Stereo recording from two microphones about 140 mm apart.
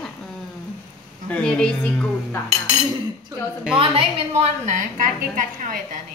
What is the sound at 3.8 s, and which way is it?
Speech, 45° right (ahead or behind).